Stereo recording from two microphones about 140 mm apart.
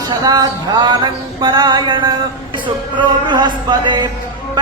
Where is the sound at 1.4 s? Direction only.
30° right (ahead or behind).